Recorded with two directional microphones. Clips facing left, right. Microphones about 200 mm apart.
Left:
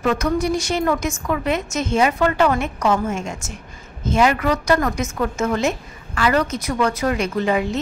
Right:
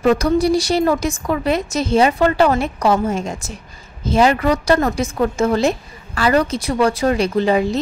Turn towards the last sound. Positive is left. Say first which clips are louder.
# right 4 dB
turn(degrees=-35)  # may be behind; listen again after turning